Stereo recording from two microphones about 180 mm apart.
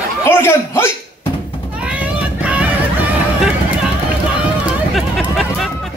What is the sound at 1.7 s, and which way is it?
Vehicle, 5° right (ahead or behind).